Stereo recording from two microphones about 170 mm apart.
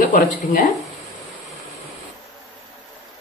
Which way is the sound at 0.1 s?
50° left (ahead or behind).